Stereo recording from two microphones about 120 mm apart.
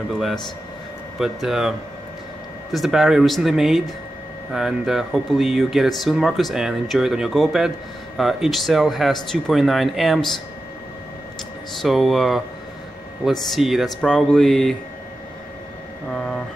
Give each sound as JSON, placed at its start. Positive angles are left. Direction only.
{"t": 1.2, "sound": "speech", "side_deg": -5}
{"t": 11.8, "sound": "speech", "side_deg": 0}
{"t": 16.1, "sound": "a sound", "side_deg": 5}